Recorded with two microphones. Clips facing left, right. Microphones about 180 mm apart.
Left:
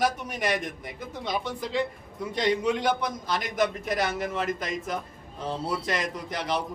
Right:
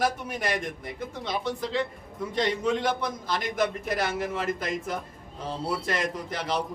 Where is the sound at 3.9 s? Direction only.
5° right (ahead or behind).